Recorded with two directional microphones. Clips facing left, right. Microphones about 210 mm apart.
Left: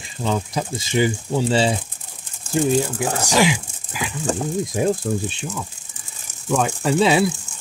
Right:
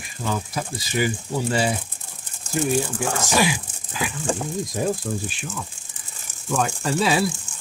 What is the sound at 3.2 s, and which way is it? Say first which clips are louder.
Speech: left 4 dB; 15° left (ahead or behind).